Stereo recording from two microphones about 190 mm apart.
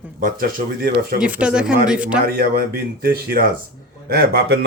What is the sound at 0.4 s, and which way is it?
Speech, 55° right (ahead or behind).